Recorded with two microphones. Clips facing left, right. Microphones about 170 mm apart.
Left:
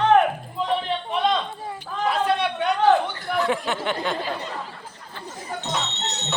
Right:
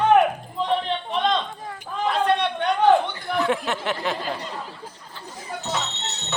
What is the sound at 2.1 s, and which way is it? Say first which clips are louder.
Chatter: right 1 dB; 5° left (ahead or behind).